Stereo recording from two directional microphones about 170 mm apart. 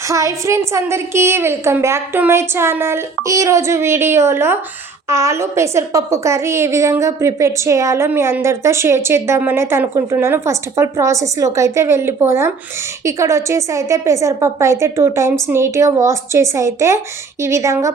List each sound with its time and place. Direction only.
0.1 s a woman's voice: 20° right (ahead or behind)